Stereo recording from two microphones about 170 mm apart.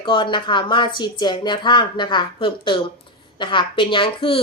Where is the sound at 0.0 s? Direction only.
30° left (ahead or behind).